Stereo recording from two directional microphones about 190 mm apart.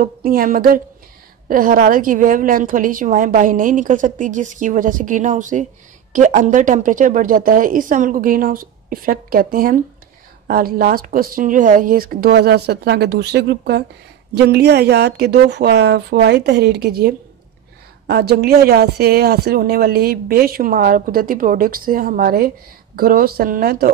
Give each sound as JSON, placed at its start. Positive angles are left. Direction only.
{"t": 0.0, "sound": "speech", "side_deg": -50}